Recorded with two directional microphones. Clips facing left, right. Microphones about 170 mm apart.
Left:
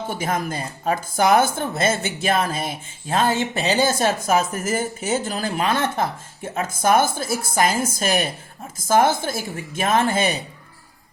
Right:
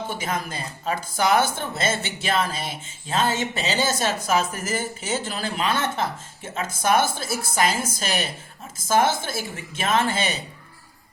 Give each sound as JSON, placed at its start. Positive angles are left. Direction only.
{"t": 0.1, "sound": "speech", "side_deg": 50}